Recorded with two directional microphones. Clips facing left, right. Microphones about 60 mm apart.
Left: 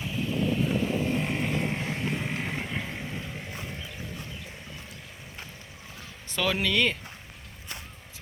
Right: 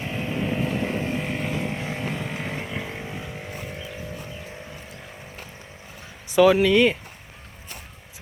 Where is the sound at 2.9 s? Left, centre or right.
Centre.